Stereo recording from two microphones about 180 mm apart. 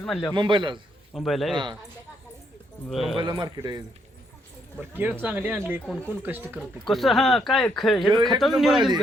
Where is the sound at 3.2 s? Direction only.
25° right (ahead or behind).